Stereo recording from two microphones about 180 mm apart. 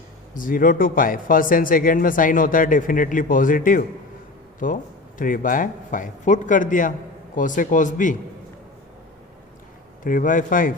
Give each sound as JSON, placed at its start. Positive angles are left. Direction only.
{"t": 0.3, "sound": "speech", "side_deg": 50}
{"t": 10.0, "sound": "speech", "side_deg": 45}